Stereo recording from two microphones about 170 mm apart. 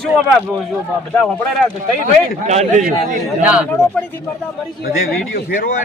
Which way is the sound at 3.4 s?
10° right (ahead or behind).